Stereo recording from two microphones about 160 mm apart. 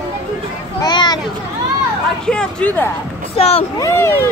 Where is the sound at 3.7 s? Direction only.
20° left (ahead or behind).